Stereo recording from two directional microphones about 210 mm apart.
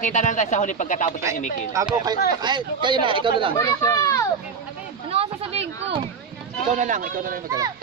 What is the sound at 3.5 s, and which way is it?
Speech, 15° left (ahead or behind).